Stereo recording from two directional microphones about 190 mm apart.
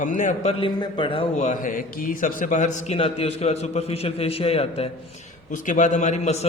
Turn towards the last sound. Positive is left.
turn(degrees=35)  # may be behind; listen again after turning